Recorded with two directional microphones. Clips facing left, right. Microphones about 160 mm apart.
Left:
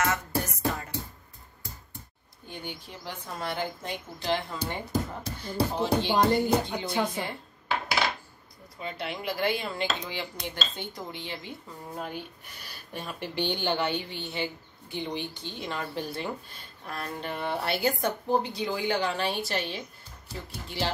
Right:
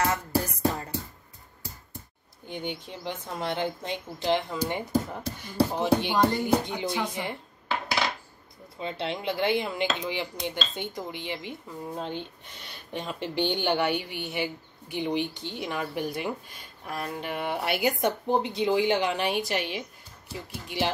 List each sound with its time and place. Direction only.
0.0 s music: 30° right (ahead or behind)
2.4 s a sound: 20° right (ahead or behind)
2.8 s dishes: 20° right (ahead or behind)
5.4 s speech: 15° right (ahead or behind)
8.7 s dishes: 25° right (ahead or behind)
12.0 s speech: 25° right (ahead or behind)